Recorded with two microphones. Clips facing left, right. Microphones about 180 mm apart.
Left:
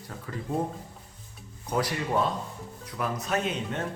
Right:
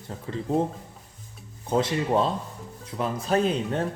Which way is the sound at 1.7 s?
25° right (ahead or behind).